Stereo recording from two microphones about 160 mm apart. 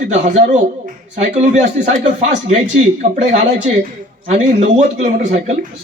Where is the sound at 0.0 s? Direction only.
50° right (ahead or behind).